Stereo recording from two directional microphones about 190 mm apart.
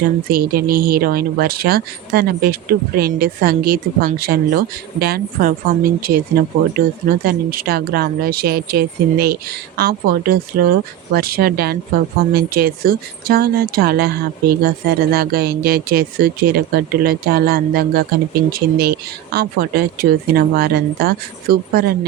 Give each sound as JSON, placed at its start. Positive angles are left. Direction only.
{"t": 0.3, "sound": "speech", "side_deg": -50}